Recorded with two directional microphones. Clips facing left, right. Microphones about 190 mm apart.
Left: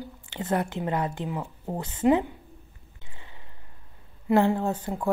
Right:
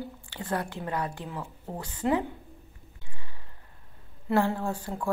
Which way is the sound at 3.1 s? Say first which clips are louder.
Left 4 dB; 20° left (ahead or behind).